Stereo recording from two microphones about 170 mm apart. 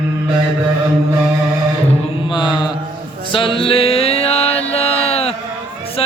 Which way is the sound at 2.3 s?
25° left (ahead or behind).